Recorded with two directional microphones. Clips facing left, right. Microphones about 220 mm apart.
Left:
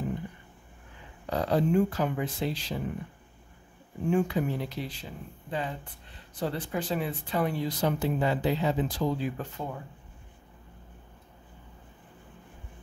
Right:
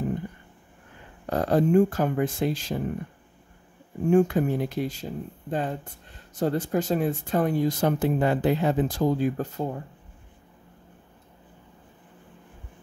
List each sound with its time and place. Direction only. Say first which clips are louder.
1.2 s speech: right 4 dB; 50° right (ahead or behind)
4.1 s speech: right 6 dB; 45° right (ahead or behind)